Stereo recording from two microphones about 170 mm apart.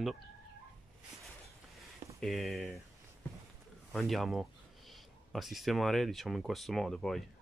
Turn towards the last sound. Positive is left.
turn(degrees=0)  # may be behind; listen again after turning